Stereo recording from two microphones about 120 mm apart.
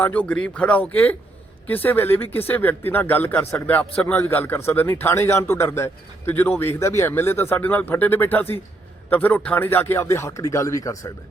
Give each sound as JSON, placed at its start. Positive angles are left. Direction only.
{"t": 0.0, "sound": "a man's voice", "side_deg": 10}